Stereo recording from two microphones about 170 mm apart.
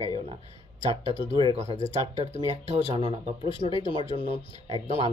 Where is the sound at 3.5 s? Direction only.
30° left (ahead or behind).